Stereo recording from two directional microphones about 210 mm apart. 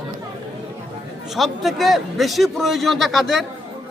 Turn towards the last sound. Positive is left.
turn(degrees=0)  # may be behind; listen again after turning